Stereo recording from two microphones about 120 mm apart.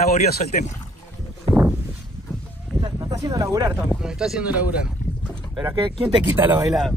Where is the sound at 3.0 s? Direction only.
30° right (ahead or behind).